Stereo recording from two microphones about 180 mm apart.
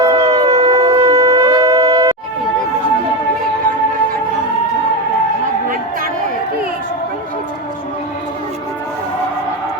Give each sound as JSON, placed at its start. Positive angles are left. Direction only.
{"t": 0.0, "sound": "shofar", "side_deg": -20}